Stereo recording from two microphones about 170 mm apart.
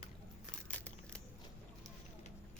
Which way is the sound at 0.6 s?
5° left (ahead or behind).